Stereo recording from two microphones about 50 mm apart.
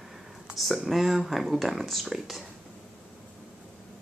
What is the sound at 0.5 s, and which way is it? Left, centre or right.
Speech, centre.